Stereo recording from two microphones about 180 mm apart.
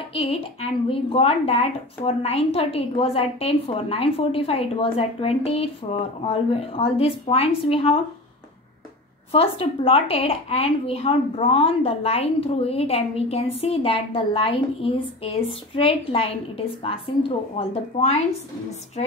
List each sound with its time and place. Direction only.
0.1 s a woman's voice: 35° left (ahead or behind)
9.3 s a woman's voice: 35° left (ahead or behind)